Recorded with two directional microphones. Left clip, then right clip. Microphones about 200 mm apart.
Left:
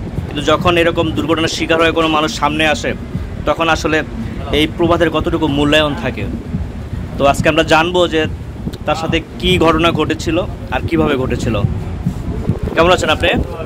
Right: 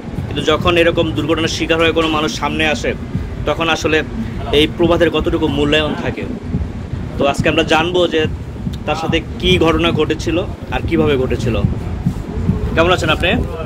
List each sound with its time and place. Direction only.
0.4 s a man's voice: 25° left (ahead or behind)
7.2 s speech: 35° left (ahead or behind)
12.7 s a man's voice: 30° left (ahead or behind)